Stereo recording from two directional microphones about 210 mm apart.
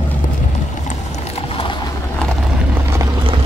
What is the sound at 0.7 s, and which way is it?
Mechanisms, 35° left (ahead or behind).